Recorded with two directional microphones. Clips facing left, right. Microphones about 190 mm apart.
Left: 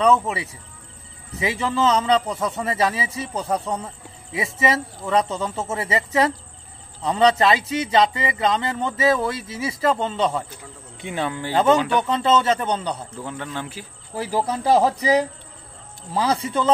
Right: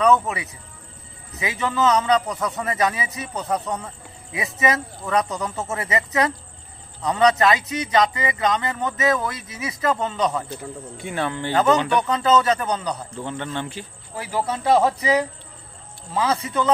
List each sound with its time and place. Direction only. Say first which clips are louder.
0.0 s speech: even; 30° left (ahead or behind)
11.0 s a man's voice: even; 15° left (ahead or behind)
12.0 s speech: even; 30° left (ahead or behind)
13.1 s a man's voice: right 2 dB; 5° left (ahead or behind)
14.1 s speech: left 2 dB; 35° left (ahead or behind)